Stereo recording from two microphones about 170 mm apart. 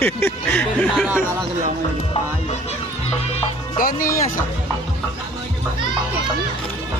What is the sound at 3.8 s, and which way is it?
Speech, 55° left (ahead or behind).